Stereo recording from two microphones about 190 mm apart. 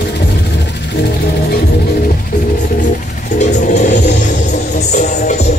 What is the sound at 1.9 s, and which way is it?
Music, 50° left (ahead or behind).